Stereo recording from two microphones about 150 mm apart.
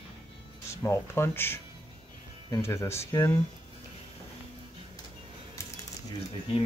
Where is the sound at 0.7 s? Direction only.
20° left (ahead or behind).